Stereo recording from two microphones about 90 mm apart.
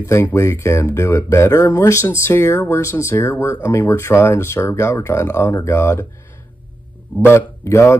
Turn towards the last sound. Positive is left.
turn(degrees=30)  # may be behind; listen again after turning